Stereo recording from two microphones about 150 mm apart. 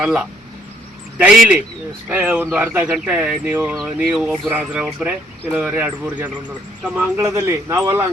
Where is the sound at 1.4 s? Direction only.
5° right (ahead or behind).